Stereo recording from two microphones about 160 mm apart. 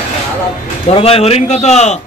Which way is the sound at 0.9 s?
40° left (ahead or behind).